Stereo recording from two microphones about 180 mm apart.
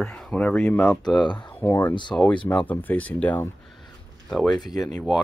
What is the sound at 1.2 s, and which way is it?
Speech, 25° left (ahead or behind).